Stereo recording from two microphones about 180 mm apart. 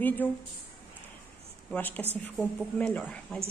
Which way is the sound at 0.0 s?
10° left (ahead or behind).